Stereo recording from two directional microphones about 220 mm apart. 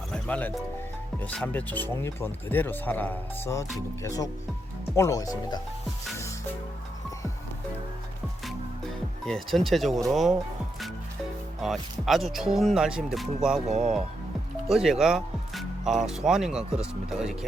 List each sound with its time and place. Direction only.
0.1 s music: 5° left (ahead or behind)
1.2 s speech: 5° left (ahead or behind)
4.9 s speech: 15° left (ahead or behind)
9.2 s speech: centre (ahead or behind)
11.6 s speech: centre (ahead or behind)
14.7 s speech: centre (ahead or behind)